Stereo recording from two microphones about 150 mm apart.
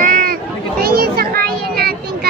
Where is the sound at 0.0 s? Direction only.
65° right (ahead or behind).